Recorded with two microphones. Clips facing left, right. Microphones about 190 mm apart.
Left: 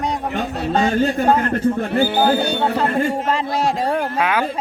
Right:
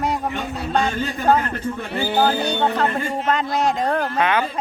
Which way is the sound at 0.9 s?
55° left (ahead or behind).